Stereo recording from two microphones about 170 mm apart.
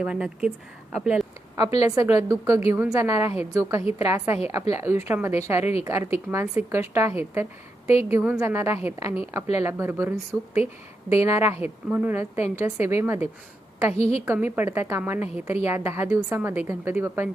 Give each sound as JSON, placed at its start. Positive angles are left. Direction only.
{"t": 0.0, "sound": "speech", "side_deg": -5}
{"t": 1.8, "sound": "a woman's voice", "side_deg": -15}
{"t": 8.1, "sound": "a woman's voice", "side_deg": -15}
{"t": 13.9, "sound": "a woman's voice", "side_deg": 40}
{"t": 14.3, "sound": "a woman's voice", "side_deg": -10}